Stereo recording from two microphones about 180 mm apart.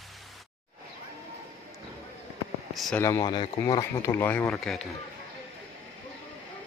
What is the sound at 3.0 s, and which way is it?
Speech, 20° left (ahead or behind).